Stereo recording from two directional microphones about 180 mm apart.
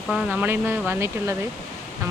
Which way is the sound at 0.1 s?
Centre (ahead or behind).